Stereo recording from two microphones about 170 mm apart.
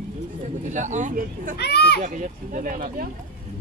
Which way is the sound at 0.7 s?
45° right (ahead or behind).